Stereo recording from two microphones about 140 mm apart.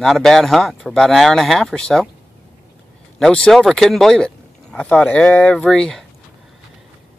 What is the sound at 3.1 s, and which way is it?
Speech, 5° left (ahead or behind).